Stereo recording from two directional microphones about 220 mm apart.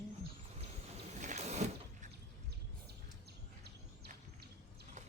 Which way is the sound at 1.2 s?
30° right (ahead or behind).